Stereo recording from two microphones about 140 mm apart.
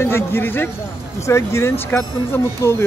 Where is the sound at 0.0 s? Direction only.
15° left (ahead or behind).